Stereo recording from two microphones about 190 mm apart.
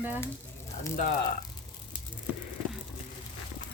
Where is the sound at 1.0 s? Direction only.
45° left (ahead or behind).